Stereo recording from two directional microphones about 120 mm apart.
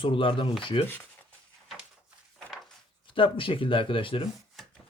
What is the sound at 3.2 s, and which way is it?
Speech, 45° left (ahead or behind).